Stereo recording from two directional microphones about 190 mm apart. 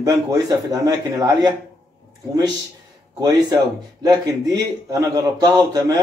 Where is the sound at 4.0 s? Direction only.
20° right (ahead or behind).